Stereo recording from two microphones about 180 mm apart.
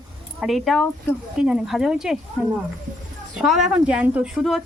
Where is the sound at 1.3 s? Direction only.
5° right (ahead or behind).